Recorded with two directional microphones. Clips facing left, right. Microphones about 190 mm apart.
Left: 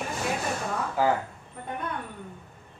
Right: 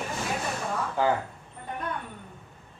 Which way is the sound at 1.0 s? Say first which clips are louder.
Left 1 dB; 5° left (ahead or behind).